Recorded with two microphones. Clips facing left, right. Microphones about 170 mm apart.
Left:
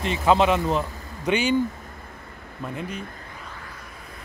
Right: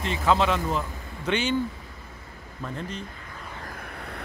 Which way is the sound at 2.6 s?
10° left (ahead or behind).